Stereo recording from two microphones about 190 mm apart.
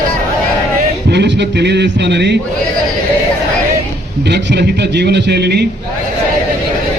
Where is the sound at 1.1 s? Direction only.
65° right (ahead or behind).